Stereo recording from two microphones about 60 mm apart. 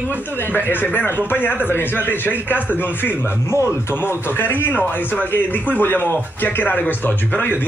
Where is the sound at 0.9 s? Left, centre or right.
Left.